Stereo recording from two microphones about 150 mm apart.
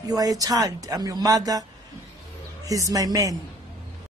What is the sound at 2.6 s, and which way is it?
Speech, 20° right (ahead or behind).